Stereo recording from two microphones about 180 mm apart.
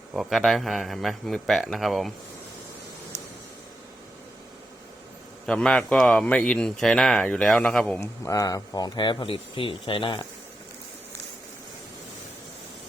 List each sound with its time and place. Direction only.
0.1 s a man's voice: centre (ahead or behind)
5.5 s a man's voice: 5° left (ahead or behind)
8.0 s speech: 15° left (ahead or behind)